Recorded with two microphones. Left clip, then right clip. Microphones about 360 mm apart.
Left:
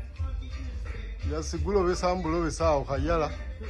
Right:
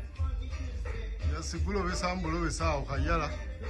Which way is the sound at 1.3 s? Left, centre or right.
Centre.